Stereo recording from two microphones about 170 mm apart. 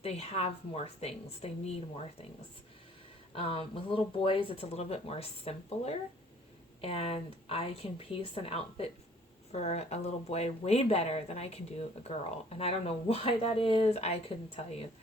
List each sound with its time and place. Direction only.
0.0 s speech: 35° left (ahead or behind)
3.3 s speech: 35° left (ahead or behind)